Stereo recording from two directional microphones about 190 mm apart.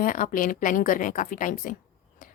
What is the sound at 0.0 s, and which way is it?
Speech, 45° left (ahead or behind).